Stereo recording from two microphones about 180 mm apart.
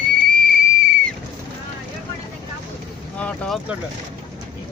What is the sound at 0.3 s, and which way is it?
Whistle, centre (ahead or behind).